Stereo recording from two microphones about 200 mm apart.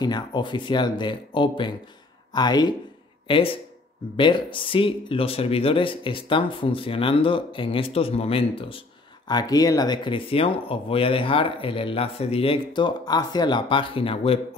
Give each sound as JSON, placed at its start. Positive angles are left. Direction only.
{"t": 0.0, "sound": "speech", "side_deg": 20}